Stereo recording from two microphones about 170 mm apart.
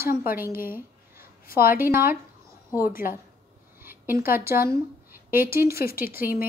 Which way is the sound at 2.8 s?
55° left (ahead or behind).